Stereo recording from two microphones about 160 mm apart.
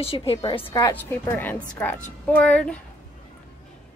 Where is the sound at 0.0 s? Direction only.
35° left (ahead or behind).